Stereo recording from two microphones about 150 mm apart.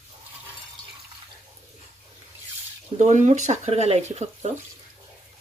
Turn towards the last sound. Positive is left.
turn(degrees=-50)  # may be behind; listen again after turning